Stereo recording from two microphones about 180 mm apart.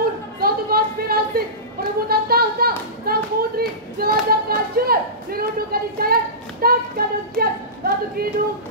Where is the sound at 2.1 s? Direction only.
60° right (ahead or behind).